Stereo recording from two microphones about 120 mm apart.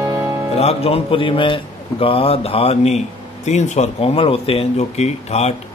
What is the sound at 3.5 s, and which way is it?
A man's voice, 75° left (ahead or behind).